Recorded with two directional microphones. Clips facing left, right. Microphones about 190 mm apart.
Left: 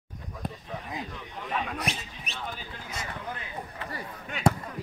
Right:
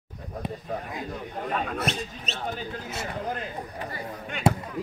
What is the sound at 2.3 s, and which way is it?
Speech, 45° right (ahead or behind).